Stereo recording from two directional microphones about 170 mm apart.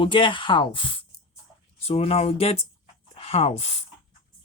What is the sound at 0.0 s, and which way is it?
Speech, 30° left (ahead or behind).